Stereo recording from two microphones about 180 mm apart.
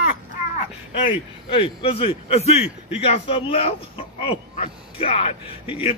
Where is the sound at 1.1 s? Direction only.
30° left (ahead or behind).